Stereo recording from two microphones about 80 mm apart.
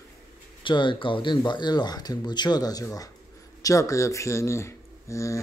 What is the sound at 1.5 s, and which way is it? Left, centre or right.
A man's voice, left.